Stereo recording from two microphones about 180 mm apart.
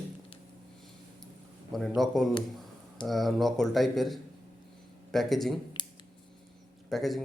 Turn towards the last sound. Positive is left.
turn(degrees=0)  # may be behind; listen again after turning